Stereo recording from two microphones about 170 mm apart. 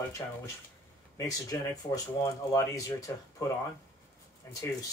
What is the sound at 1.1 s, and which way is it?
Speech, 20° left (ahead or behind).